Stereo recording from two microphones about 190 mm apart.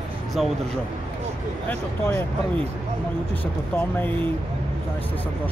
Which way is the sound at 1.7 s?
10° left (ahead or behind).